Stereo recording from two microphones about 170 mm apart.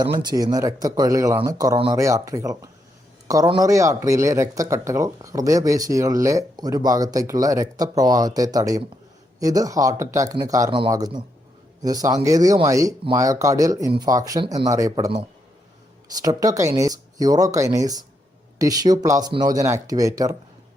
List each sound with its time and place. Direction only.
0.0 s speech: 25° right (ahead or behind)
16.1 s speech: 20° right (ahead or behind)